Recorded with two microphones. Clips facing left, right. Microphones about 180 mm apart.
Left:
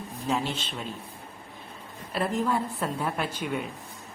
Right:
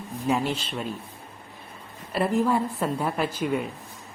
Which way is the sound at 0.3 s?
Centre (ahead or behind).